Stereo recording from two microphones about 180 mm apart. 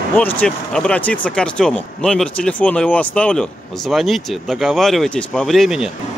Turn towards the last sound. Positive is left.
turn(degrees=0)  # may be behind; listen again after turning